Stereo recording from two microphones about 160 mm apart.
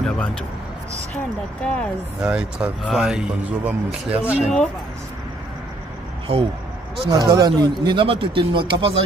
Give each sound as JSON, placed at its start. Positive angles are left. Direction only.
{"t": 0.0, "sound": "a sound", "side_deg": 5}
{"t": 1.1, "sound": "speech", "side_deg": 5}
{"t": 2.2, "sound": "a man's voice", "side_deg": -5}
{"t": 7.1, "sound": "a man's voice", "side_deg": -25}